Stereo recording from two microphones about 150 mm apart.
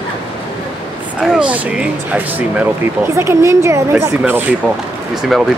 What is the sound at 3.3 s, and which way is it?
A woman's voice, 20° right (ahead or behind).